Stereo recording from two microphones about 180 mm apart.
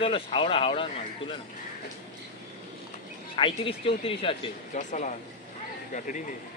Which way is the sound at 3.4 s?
30° left (ahead or behind).